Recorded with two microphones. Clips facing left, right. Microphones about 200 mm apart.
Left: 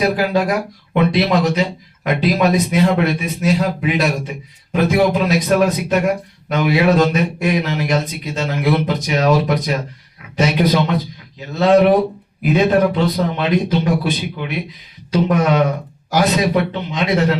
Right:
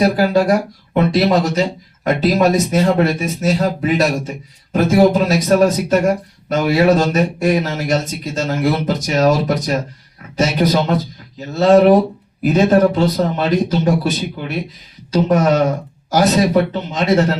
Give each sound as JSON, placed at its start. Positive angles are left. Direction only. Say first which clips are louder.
{"t": 0.0, "sound": "speech", "louder": "right 3 dB", "side_deg": -45}
{"t": 16.9, "sound": "speech", "louder": "right 2 dB", "side_deg": -45}